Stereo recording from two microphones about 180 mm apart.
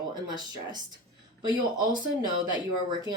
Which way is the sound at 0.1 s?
25° right (ahead or behind).